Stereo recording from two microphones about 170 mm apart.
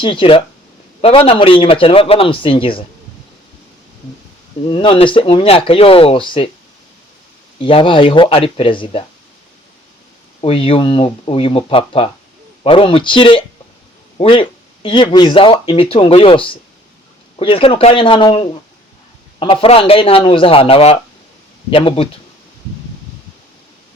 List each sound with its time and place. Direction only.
0.0 s speech: 30° left (ahead or behind)
4.7 s speech: 30° left (ahead or behind)
7.6 s speech: 30° left (ahead or behind)
10.4 s speech: 35° left (ahead or behind)
19.6 s speech: 35° left (ahead or behind)